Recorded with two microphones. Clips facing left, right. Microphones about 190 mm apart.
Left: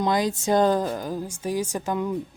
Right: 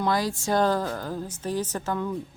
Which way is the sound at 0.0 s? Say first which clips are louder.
Left 3 dB; 20° left (ahead or behind).